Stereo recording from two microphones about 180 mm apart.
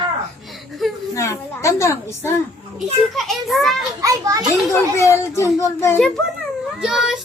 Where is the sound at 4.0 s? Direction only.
20° right (ahead or behind).